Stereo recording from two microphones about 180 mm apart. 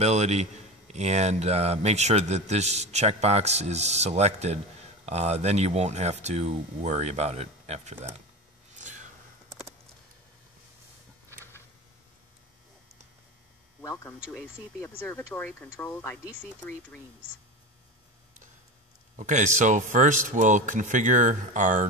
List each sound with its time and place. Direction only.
0.0 s a man's voice: 35° right (ahead or behind)
8.7 s a sound: 45° right (ahead or behind)
13.7 s a man's voice: 15° left (ahead or behind)
19.1 s a man's voice: 45° right (ahead or behind)